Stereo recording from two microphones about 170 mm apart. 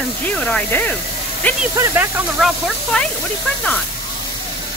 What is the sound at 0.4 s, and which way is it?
Speech, 5° left (ahead or behind).